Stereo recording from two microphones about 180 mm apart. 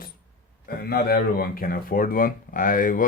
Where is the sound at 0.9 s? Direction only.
60° left (ahead or behind).